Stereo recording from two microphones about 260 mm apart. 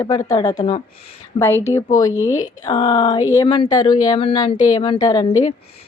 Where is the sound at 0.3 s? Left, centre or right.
Centre.